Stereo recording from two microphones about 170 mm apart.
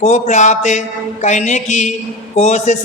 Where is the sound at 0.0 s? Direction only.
45° left (ahead or behind).